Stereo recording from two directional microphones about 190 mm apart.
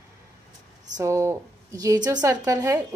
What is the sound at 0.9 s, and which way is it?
Speech, 15° right (ahead or behind).